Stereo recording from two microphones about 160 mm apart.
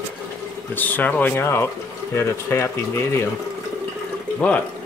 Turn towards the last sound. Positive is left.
turn(degrees=10)  # may be behind; listen again after turning